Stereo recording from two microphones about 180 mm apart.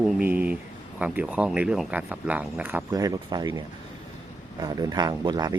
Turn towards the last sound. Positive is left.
turn(degrees=-20)  # may be behind; listen again after turning